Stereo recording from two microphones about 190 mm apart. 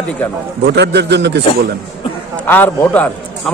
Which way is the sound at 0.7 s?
60° right (ahead or behind).